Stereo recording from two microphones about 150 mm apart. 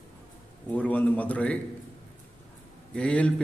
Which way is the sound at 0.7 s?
10° left (ahead or behind).